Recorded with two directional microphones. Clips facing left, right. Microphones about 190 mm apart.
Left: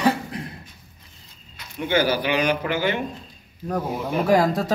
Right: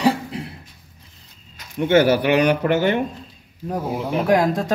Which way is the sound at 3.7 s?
10° right (ahead or behind).